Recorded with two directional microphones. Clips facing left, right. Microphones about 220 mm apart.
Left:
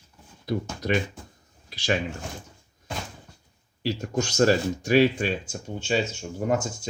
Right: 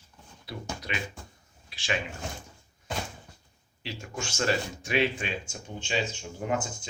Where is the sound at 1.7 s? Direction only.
40° left (ahead or behind).